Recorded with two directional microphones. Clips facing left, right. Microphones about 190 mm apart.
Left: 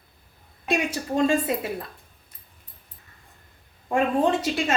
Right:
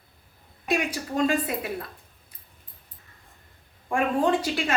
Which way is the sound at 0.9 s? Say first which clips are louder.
Left 2 dB; 25° left (ahead or behind).